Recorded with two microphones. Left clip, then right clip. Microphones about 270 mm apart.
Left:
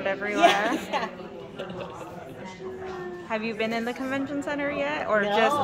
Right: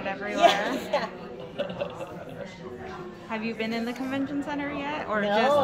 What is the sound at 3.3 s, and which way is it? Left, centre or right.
A woman's voice, centre.